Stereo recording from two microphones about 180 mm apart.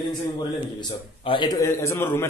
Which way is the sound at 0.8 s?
25° left (ahead or behind).